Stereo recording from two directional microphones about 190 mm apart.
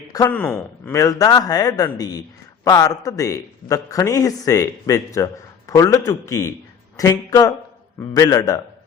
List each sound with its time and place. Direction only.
0.1 s speech: 15° left (ahead or behind)